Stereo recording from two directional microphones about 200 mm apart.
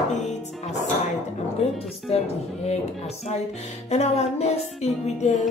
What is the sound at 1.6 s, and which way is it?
Speech, 30° left (ahead or behind).